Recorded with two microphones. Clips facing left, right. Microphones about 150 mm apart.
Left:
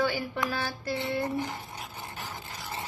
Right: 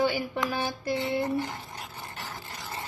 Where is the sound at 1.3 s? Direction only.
15° left (ahead or behind).